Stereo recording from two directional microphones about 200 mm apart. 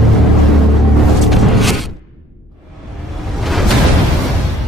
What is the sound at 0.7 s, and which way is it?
Music, centre (ahead or behind).